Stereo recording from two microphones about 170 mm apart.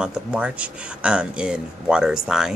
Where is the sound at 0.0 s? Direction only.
5° right (ahead or behind).